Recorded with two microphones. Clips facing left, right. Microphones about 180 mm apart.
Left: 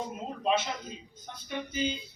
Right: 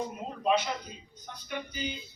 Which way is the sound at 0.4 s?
25° left (ahead or behind).